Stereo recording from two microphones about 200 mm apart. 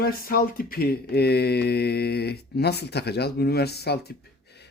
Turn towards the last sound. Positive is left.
turn(degrees=55)  # may be behind; listen again after turning